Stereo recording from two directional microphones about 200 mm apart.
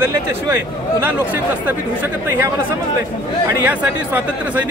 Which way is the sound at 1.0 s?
10° right (ahead or behind).